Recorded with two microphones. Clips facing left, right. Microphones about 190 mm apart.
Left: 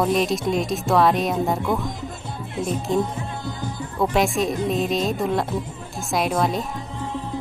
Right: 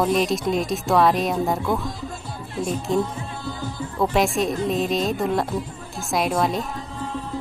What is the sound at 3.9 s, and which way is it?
Speech, centre (ahead or behind).